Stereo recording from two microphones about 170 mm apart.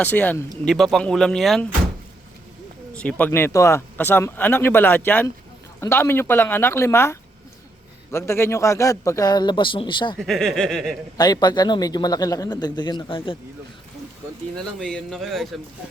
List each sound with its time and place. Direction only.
0.0 s speech: 10° left (ahead or behind)
2.9 s a man's voice: 5° left (ahead or behind); by 10.2 s 30° left (ahead or behind)
10.2 s speech: centre (ahead or behind)
11.2 s a man's voice: 25° left (ahead or behind)
14.8 s speech: 5° left (ahead or behind)